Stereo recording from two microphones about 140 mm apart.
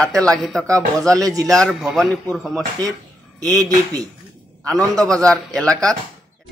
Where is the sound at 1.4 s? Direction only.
5° left (ahead or behind).